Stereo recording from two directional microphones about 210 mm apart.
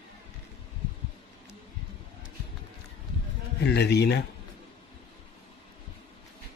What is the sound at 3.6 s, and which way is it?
Speech, 50° left (ahead or behind).